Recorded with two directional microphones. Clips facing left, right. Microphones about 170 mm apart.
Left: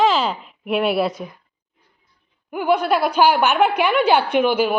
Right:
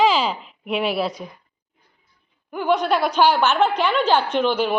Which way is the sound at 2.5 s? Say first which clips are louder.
Left 1 dB; 10° left (ahead or behind).